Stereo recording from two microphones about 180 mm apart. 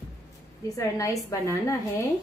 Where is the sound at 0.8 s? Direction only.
20° left (ahead or behind).